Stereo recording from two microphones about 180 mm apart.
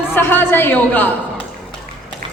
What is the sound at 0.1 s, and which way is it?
A woman's voice, 10° left (ahead or behind).